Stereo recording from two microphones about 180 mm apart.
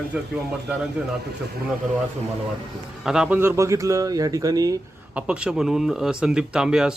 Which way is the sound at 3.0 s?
5° right (ahead or behind).